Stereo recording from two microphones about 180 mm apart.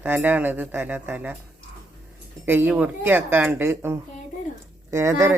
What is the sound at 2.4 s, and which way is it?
Speech, 10° right (ahead or behind).